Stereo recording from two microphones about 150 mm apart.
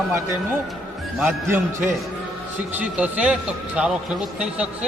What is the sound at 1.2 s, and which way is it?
A man's voice, 15° right (ahead or behind).